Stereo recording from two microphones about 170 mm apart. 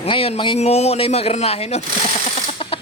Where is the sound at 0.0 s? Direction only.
35° left (ahead or behind).